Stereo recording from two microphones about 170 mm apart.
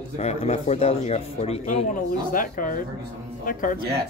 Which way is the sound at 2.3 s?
55° left (ahead or behind).